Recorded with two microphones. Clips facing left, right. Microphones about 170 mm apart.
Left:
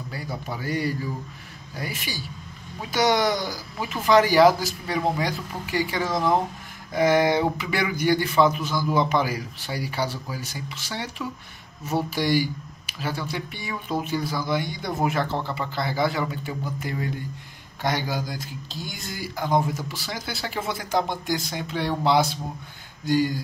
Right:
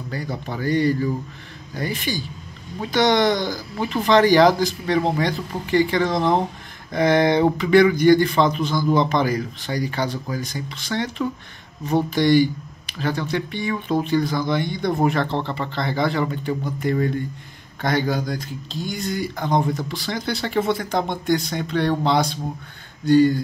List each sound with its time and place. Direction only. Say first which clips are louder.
0.1 s speech: right 5 dB; 5° left (ahead or behind)
6.1 s speech: even; 25° right (ahead or behind)
6.9 s speech: right 2 dB; 5° left (ahead or behind)